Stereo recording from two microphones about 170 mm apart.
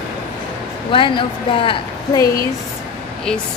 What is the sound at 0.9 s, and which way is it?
A woman's voice, 30° left (ahead or behind).